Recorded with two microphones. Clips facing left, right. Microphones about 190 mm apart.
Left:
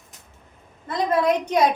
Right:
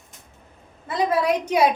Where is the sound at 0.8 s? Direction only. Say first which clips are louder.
Left 1 dB; 5° right (ahead or behind).